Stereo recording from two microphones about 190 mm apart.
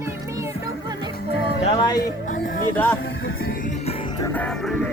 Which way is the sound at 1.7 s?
25° left (ahead or behind).